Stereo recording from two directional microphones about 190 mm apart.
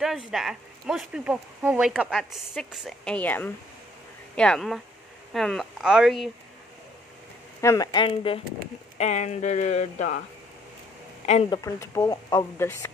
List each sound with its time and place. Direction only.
0.0 s speech: centre (ahead or behind)
3.2 s speech: 10° left (ahead or behind)
7.6 s speech: 20° left (ahead or behind); by 10.2 s 40° left (ahead or behind)
11.5 s speech: 15° left (ahead or behind)